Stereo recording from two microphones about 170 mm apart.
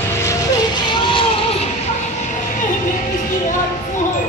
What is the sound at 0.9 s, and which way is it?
Vehicle, 30° left (ahead or behind).